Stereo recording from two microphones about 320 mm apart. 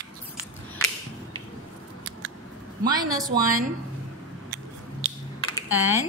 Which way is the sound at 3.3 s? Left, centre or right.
Right.